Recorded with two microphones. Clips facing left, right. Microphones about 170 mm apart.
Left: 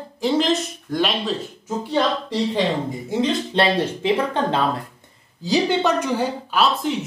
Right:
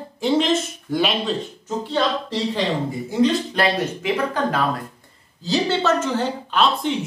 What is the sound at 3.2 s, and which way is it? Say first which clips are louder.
Speech: right 2 dB; 25° left (ahead or behind).